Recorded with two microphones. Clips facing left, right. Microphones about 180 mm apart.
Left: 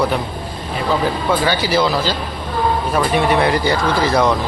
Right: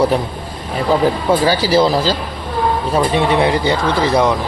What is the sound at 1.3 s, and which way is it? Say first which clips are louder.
Speech: right 2 dB; 35° right (ahead or behind).